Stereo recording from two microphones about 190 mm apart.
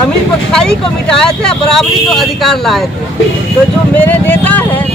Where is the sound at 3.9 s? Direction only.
10° left (ahead or behind).